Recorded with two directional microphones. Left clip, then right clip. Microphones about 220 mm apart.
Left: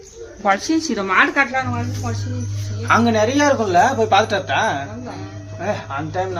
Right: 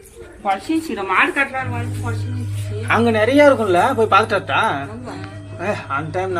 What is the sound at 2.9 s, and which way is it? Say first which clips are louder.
A woman's voice: even; 5° left (ahead or behind).